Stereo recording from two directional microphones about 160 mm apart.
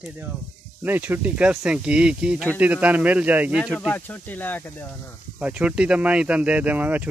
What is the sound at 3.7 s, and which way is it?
Speech, 10° left (ahead or behind).